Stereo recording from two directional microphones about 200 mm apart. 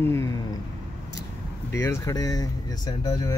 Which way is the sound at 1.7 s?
15° left (ahead or behind).